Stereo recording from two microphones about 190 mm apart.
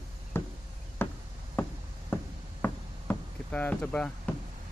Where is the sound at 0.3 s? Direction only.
10° left (ahead or behind).